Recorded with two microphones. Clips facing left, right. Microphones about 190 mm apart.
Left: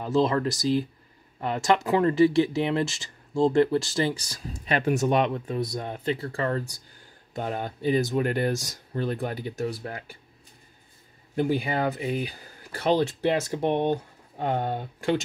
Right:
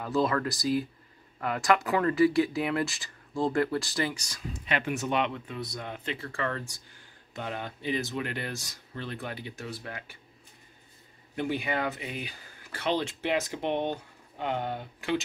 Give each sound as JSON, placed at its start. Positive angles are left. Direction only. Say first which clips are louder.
{"t": 0.0, "sound": "speech", "louder": "left 4 dB", "side_deg": 25}
{"t": 11.3, "sound": "speech", "louder": "left 5 dB", "side_deg": 35}